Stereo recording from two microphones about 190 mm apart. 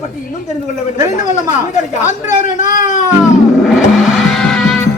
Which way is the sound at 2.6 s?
40° left (ahead or behind).